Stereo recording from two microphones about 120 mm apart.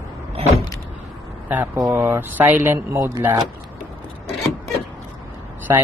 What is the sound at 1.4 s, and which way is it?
Speech, 15° right (ahead or behind).